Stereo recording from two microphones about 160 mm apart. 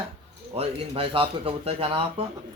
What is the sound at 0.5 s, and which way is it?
A man's voice, 40° right (ahead or behind).